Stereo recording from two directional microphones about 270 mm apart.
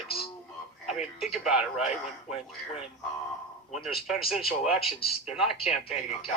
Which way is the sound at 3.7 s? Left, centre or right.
Centre.